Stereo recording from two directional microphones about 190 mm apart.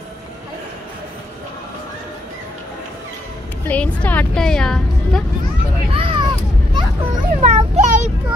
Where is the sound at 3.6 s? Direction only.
5° left (ahead or behind).